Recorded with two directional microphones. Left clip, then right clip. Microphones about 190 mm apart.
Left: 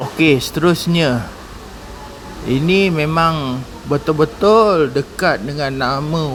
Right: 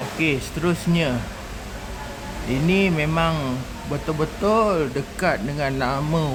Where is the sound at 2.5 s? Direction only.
20° left (ahead or behind).